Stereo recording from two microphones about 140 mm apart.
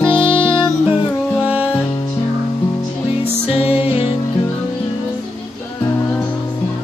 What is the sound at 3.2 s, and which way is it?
Music, 45° left (ahead or behind).